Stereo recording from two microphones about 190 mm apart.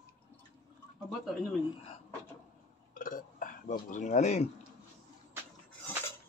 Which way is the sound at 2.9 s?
45° left (ahead or behind).